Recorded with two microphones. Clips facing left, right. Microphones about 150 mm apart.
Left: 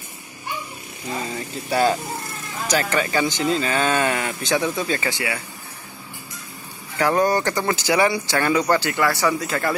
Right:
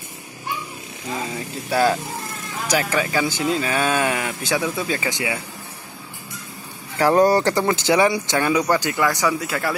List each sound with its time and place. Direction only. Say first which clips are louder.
1.3 s speech: even; centre (ahead or behind)
5.1 s speech: right 1 dB; 20° right (ahead or behind)
7.0 s speech: right 3 dB; 35° right (ahead or behind)
7.7 s speech: even; 20° right (ahead or behind)